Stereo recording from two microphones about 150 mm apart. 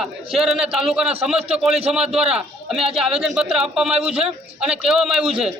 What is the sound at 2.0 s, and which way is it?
Speech, 45° right (ahead or behind).